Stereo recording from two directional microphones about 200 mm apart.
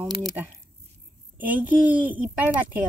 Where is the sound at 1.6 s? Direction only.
10° right (ahead or behind).